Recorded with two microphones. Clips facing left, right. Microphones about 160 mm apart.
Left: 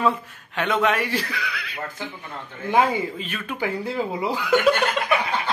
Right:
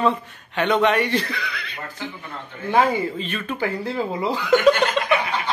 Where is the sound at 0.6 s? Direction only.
Centre (ahead or behind).